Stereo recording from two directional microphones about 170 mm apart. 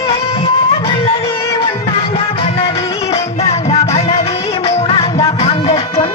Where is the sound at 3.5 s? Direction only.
40° left (ahead or behind).